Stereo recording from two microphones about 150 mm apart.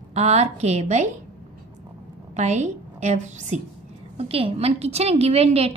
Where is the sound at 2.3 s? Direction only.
50° right (ahead or behind).